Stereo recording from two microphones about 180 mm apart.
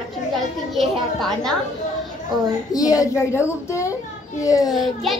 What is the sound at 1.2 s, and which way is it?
Speech, centre (ahead or behind).